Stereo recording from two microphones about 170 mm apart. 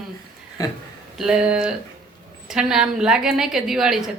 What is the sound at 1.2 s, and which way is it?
Speech, 5° right (ahead or behind).